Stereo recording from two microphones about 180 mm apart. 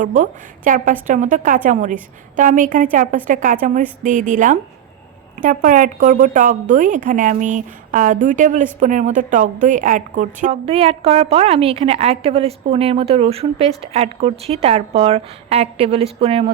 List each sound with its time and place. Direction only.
0.0 s a woman's voice: 45° right (ahead or behind)